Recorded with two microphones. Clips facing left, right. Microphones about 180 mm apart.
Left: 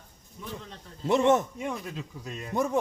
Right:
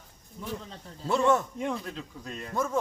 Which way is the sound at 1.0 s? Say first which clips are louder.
Left 2 dB; 20° left (ahead or behind).